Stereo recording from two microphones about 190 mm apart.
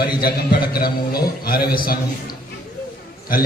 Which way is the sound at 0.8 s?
50° left (ahead or behind).